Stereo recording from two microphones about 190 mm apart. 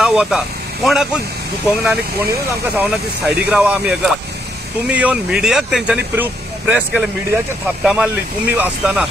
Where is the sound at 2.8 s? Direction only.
5° right (ahead or behind).